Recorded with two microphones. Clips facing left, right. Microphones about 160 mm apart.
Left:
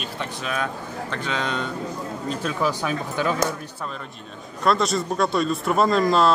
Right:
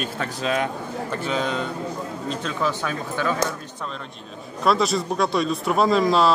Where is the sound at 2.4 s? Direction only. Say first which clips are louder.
Left 2 dB; 10° left (ahead or behind).